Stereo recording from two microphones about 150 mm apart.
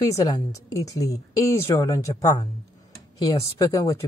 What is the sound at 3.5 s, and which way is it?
Speech, 20° left (ahead or behind).